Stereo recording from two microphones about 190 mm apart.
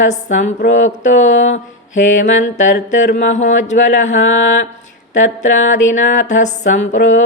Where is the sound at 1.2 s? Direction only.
90° left.